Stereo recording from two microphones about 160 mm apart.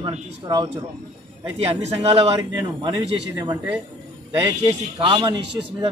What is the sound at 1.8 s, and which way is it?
Speech, 40° right (ahead or behind).